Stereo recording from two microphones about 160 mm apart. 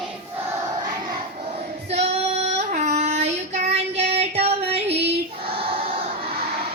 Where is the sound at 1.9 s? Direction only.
45° right (ahead or behind).